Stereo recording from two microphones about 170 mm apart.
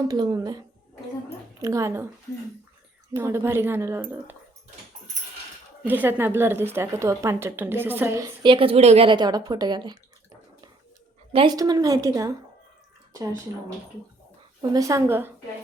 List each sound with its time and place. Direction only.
0.1 s a woman's voice: 25° right (ahead or behind)
1.6 s a woman's voice: 15° right (ahead or behind)
3.1 s a woman's voice: 15° right (ahead or behind)
5.8 s a woman's voice: 10° right (ahead or behind)
8.4 s a woman's voice: 30° right (ahead or behind)
11.3 s a woman's voice: 35° right (ahead or behind)
11.5 s a woman's voice: 20° right (ahead or behind)
14.6 s a woman's voice: 20° right (ahead or behind)